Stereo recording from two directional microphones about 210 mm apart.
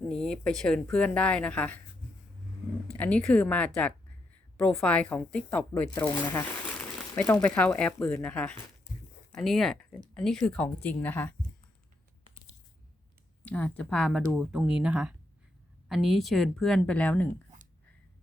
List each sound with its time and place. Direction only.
0.1 s speech: 5° left (ahead or behind)
2.8 s speech: 5° left (ahead or behind)
8.9 s a sound: 50° left (ahead or behind)
9.3 s speech: centre (ahead or behind)
13.4 s speech: 10° left (ahead or behind)